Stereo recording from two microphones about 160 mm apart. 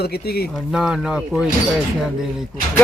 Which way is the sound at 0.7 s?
5° right (ahead or behind).